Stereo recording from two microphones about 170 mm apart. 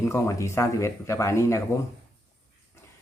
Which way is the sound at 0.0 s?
15° left (ahead or behind).